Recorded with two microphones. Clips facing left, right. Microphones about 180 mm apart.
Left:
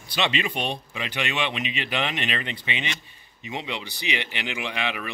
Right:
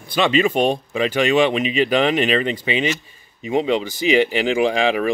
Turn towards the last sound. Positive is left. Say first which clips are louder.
# right 13 dB
turn(degrees=-40)  # may be behind; listen again after turning